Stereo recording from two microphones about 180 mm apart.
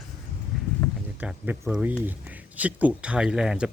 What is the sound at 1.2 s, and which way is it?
Speech, 5° right (ahead or behind).